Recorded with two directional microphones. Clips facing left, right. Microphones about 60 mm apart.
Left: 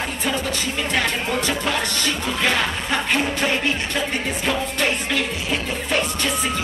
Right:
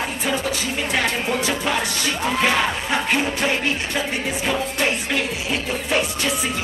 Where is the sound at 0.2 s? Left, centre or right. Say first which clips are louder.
Even; centre.